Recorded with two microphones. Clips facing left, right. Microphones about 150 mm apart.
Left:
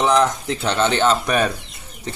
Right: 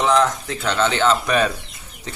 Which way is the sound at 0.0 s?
15° left (ahead or behind).